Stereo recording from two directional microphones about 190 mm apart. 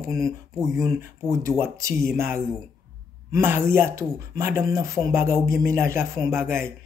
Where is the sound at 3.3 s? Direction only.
10° right (ahead or behind).